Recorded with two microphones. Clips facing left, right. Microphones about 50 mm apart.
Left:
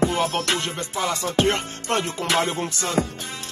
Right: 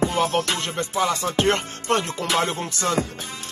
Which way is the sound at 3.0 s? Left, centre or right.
Left.